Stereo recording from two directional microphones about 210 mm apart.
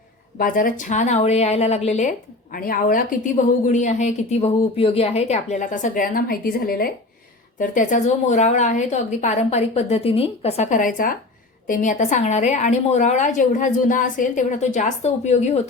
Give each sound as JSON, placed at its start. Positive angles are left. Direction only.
{"t": 0.3, "sound": "a woman's voice", "side_deg": 40}